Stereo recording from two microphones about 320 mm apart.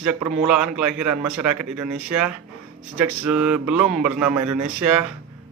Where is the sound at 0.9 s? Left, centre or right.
Right.